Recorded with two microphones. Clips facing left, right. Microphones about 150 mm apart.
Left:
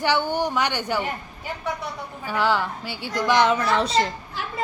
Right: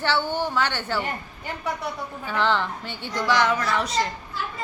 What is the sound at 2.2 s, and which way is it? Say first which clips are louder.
A woman's voice: left 1 dB; 10° left (ahead or behind).